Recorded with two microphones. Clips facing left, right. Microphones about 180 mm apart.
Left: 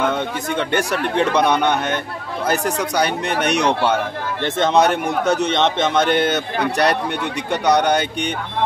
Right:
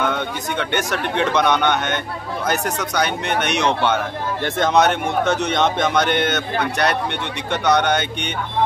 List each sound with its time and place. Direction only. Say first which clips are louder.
0.7 s speech: left 2 dB; 35° left (ahead or behind)